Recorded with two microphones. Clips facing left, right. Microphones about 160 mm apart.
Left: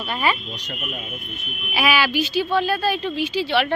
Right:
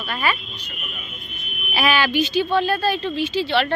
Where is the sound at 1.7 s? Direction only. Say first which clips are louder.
Right 1 dB; 10° left (ahead or behind).